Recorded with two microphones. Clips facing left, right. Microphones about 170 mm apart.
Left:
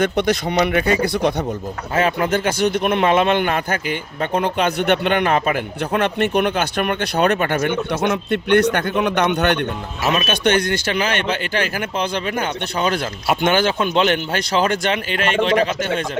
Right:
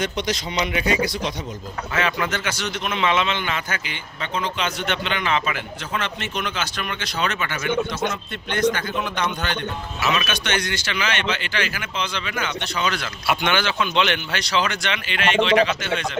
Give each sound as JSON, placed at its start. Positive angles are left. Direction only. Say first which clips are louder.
{"t": 0.0, "sound": "a man's voice", "louder": "left 7 dB", "side_deg": 55}
{"t": 2.0, "sound": "a man's voice", "louder": "left 6 dB", "side_deg": 45}
{"t": 10.0, "sound": "speech", "louder": "left 6 dB", "side_deg": 45}